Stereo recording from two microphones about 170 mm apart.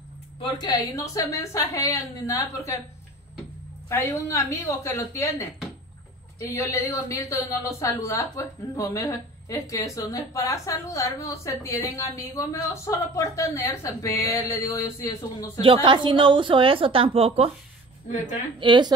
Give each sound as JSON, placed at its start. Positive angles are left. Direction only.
{"t": 0.4, "sound": "a woman's voice", "side_deg": 25}
{"t": 3.9, "sound": "a woman's voice", "side_deg": 15}
{"t": 15.6, "sound": "a woman's voice", "side_deg": -30}
{"t": 18.0, "sound": "a woman's voice", "side_deg": 45}
{"t": 18.6, "sound": "a woman's voice", "side_deg": -25}